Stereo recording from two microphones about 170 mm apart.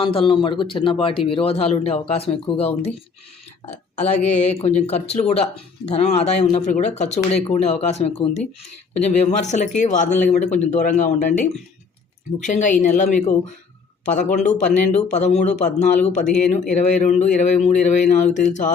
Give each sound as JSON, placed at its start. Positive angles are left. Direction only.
{"t": 0.0, "sound": "speech", "side_deg": 30}
{"t": 3.9, "sound": "speech", "side_deg": 40}